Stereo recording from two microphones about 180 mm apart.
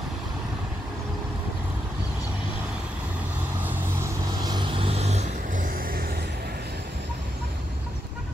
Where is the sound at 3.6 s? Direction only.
15° right (ahead or behind); by 6.2 s 55° right (ahead or behind).